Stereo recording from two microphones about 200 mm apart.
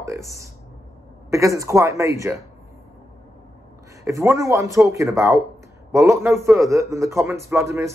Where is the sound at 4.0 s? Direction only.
15° right (ahead or behind).